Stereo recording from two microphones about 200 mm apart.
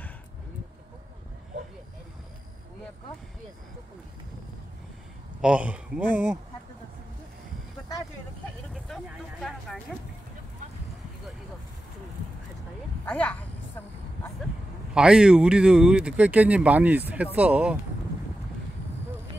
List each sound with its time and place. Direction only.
5.4 s speech: 5° right (ahead or behind)
8.8 s speech: centre (ahead or behind)
13.0 s speech: 5° left (ahead or behind)
15.0 s speech: 5° right (ahead or behind)